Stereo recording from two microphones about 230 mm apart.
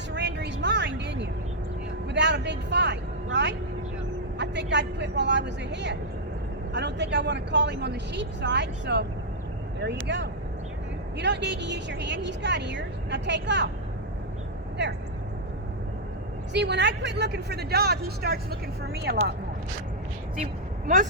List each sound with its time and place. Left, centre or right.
0.1 s a sound: right
2.0 s vehicle: right
4.4 s speech: right
16.5 s speech: right
20.8 s speech: right